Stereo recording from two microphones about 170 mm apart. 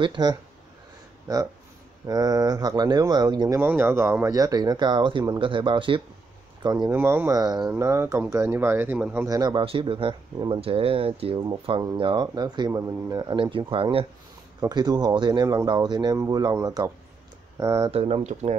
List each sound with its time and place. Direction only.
0.0 s speech: 25° right (ahead or behind)
6.9 s speech: 15° right (ahead or behind)
9.3 s speech: 25° right (ahead or behind)
17.9 s speech: 35° right (ahead or behind)